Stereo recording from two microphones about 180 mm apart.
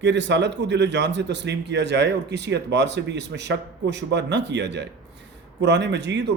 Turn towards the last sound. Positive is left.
turn(degrees=-80)